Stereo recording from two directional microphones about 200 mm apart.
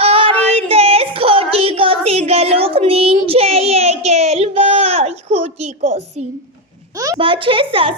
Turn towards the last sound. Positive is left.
turn(degrees=-25)  # may be behind; listen again after turning